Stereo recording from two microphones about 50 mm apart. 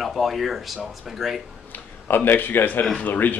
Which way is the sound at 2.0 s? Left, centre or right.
Left.